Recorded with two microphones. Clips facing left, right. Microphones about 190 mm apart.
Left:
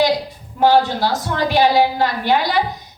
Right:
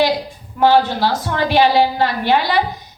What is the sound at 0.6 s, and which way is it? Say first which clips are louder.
A woman's voice: right 1 dB; 45° left (ahead or behind).